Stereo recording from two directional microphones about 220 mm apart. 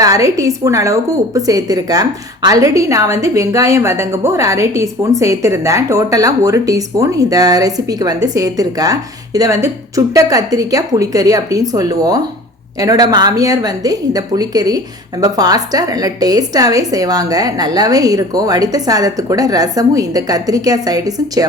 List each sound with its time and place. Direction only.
0.0 s a woman's voice: 15° right (ahead or behind)